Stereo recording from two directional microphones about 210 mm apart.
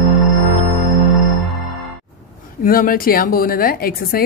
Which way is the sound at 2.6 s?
45° left (ahead or behind).